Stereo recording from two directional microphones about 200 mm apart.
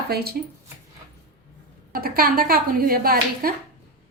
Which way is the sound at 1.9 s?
50° right (ahead or behind).